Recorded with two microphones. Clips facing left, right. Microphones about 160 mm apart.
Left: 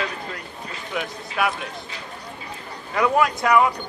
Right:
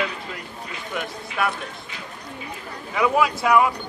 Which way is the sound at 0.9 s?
Centre (ahead or behind).